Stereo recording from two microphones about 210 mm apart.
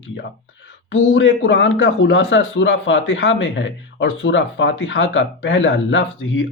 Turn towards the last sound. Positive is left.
turn(degrees=65)  # may be behind; listen again after turning